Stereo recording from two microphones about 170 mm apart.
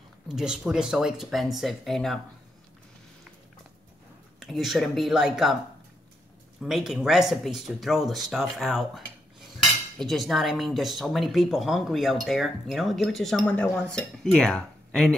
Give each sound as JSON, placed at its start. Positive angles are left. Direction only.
{"t": 0.3, "sound": "speech", "side_deg": -5}
{"t": 4.4, "sound": "speech", "side_deg": 0}
{"t": 6.6, "sound": "speech", "side_deg": 0}